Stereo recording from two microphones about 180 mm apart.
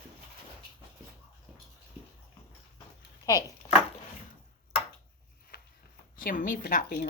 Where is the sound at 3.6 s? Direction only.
30° left (ahead or behind).